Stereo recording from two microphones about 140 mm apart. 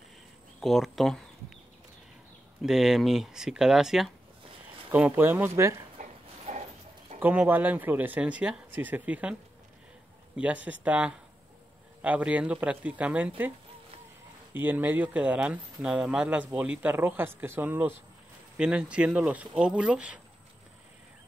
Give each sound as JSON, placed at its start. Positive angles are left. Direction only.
{"t": 0.6, "sound": "speech", "side_deg": 0}
{"t": 2.6, "sound": "speech", "side_deg": 0}
{"t": 5.9, "sound": "dog", "side_deg": -55}
{"t": 7.2, "sound": "speech", "side_deg": -15}
{"t": 14.5, "sound": "speech", "side_deg": -15}